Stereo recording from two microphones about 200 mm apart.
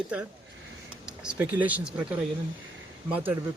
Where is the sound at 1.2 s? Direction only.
10° right (ahead or behind).